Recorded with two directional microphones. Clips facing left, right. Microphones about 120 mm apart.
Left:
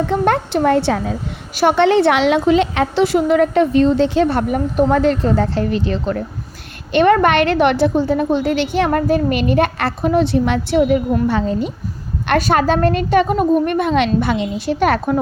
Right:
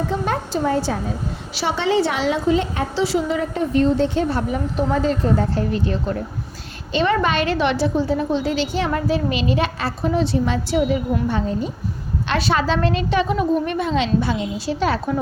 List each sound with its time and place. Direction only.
0.1 s a woman's voice: 65° left (ahead or behind); by 1.1 s 80° left
1.5 s a woman's voice: 60° left (ahead or behind); by 3.0 s 80° left
3.0 s a woman's voice: 55° left (ahead or behind); by 6.1 s 85° left
6.9 s a woman's voice: 55° left (ahead or behind); by 11.7 s 85° left
12.3 s a woman's voice: 50° left (ahead or behind)